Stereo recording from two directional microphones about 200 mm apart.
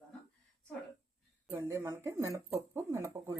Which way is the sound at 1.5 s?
10° right (ahead or behind).